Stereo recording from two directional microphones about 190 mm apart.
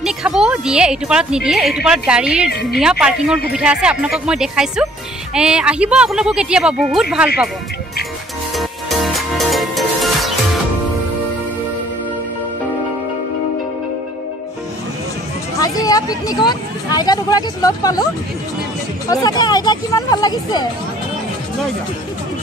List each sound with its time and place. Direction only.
0.0 s a woman's voice: centre (ahead or behind)
8.5 s music: centre (ahead or behind)
15.6 s speech: 20° left (ahead or behind)
19.0 s speech: 20° left (ahead or behind)